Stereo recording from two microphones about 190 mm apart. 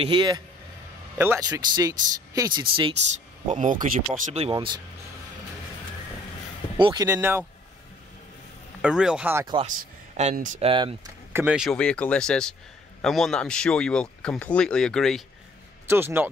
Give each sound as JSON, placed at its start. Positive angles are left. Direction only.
{"t": 0.0, "sound": "speech", "side_deg": -25}
{"t": 1.1, "sound": "speech", "side_deg": -15}
{"t": 3.4, "sound": "speech", "side_deg": -40}
{"t": 4.6, "sound": "speech", "side_deg": -20}
{"t": 6.8, "sound": "speech", "side_deg": -25}
{"t": 7.1, "sound": "speech", "side_deg": -10}
{"t": 8.8, "sound": "speech", "side_deg": -5}
{"t": 9.7, "sound": "speech", "side_deg": -40}
{"t": 10.7, "sound": "speech", "side_deg": -25}
{"t": 11.3, "sound": "speech", "side_deg": -5}
{"t": 15.9, "sound": "speech", "side_deg": -10}